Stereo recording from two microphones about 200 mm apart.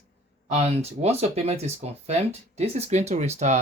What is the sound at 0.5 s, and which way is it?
Speech, 30° right (ahead or behind).